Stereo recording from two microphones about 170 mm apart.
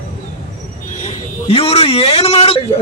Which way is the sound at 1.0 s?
35° left (ahead or behind).